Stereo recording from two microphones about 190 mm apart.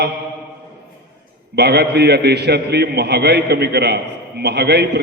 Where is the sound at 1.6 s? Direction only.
60° right (ahead or behind).